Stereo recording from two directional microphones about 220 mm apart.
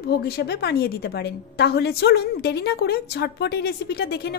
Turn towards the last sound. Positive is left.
turn(degrees=45)  # may be behind; listen again after turning